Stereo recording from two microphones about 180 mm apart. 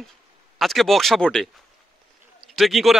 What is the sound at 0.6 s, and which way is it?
A man's voice, centre (ahead or behind).